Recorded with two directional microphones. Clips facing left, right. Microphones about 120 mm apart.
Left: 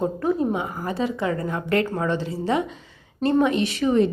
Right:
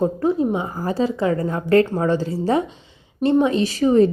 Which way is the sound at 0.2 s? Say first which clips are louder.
Right 3 dB; 25° right (ahead or behind).